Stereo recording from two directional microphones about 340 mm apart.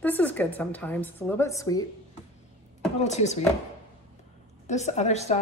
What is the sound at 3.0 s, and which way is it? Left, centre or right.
Speech, centre.